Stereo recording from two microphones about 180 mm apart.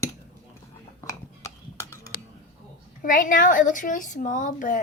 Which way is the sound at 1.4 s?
15° left (ahead or behind).